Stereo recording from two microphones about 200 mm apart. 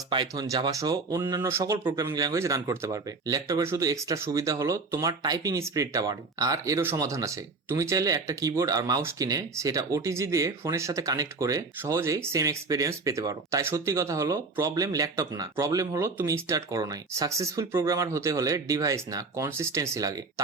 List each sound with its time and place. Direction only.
0.1 s speech: 20° right (ahead or behind)
1.8 s speech: 25° right (ahead or behind)